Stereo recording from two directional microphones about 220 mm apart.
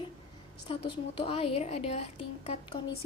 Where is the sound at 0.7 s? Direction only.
25° left (ahead or behind).